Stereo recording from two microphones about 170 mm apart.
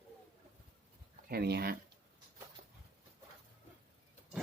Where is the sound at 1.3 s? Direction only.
65° right (ahead or behind).